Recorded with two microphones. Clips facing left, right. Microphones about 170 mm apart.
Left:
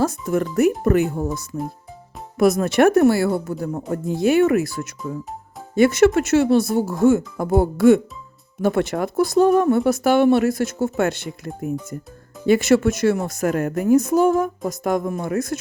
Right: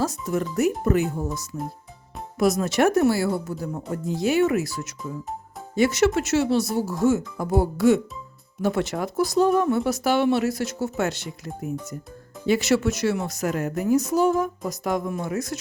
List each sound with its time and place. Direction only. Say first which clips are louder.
0.0 s a woman's voice: left 4 dB; 55° left (ahead or behind)